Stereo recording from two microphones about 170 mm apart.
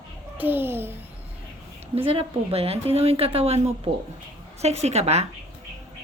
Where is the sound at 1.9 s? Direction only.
35° right (ahead or behind).